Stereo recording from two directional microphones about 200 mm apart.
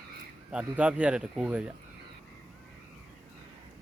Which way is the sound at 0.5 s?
5° right (ahead or behind).